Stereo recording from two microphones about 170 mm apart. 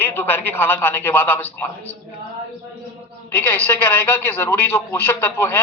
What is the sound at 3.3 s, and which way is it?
A woman's voice, 10° left (ahead or behind).